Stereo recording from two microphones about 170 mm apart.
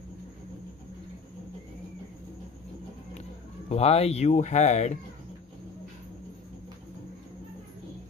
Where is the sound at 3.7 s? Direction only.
35° left (ahead or behind).